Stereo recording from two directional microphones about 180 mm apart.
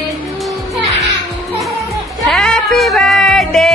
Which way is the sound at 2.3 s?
5° left (ahead or behind).